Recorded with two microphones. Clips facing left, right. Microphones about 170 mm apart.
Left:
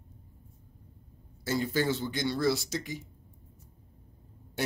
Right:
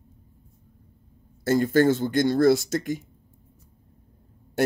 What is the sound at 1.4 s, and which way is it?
Speech, 50° right (ahead or behind).